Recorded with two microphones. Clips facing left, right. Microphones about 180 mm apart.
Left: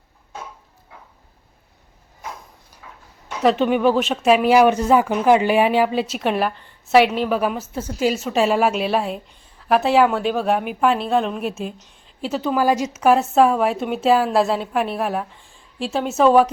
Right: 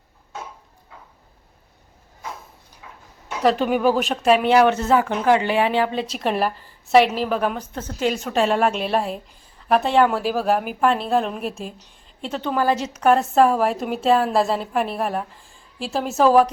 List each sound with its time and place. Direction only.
3.2 s speech: centre (ahead or behind)